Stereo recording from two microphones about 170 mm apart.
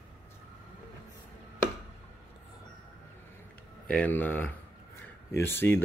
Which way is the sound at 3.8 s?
5° left (ahead or behind).